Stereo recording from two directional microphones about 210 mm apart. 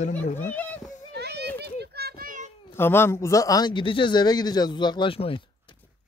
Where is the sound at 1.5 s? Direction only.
50° right (ahead or behind).